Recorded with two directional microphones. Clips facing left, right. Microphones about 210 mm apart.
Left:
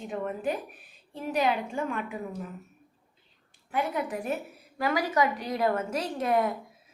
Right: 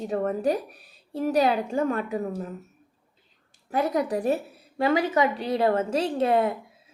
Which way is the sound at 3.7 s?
40° right (ahead or behind).